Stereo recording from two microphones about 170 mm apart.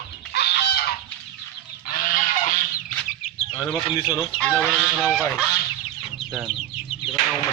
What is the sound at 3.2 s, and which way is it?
Chicken, 40° left (ahead or behind).